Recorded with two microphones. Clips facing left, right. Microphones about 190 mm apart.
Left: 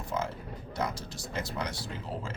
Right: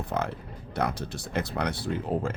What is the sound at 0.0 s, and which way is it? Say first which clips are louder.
Speech: right 3 dB; 60° right (ahead or behind).